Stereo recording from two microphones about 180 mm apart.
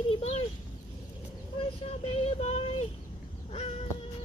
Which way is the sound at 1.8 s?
35° left (ahead or behind).